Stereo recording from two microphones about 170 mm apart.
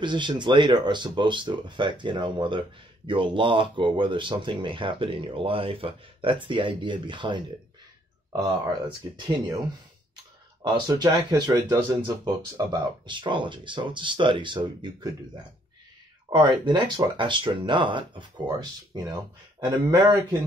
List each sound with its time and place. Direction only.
0.0 s speech: 25° right (ahead or behind)
10.6 s speech: 25° right (ahead or behind)
16.3 s speech: 25° right (ahead or behind)